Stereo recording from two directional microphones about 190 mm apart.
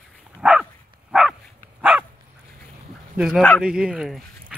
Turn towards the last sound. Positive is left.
turn(degrees=-5)  # may be behind; listen again after turning